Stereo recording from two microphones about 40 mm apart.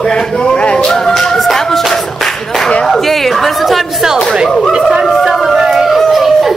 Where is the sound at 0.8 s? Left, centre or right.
Centre.